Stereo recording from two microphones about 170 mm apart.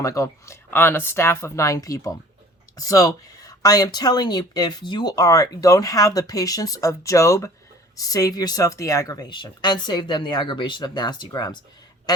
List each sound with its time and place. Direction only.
0.0 s speech: 20° left (ahead or behind)